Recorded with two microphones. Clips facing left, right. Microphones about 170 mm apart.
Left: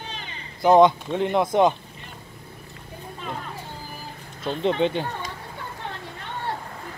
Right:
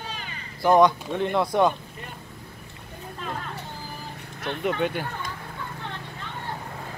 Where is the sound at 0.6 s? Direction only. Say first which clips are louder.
Left 3 dB; 20° left (ahead or behind).